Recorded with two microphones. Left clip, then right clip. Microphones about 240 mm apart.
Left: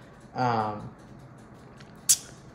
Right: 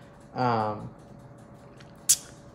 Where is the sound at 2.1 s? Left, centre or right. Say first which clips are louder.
Left 1 dB; centre.